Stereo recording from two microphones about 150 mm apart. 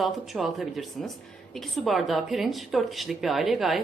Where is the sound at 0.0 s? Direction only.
Centre (ahead or behind).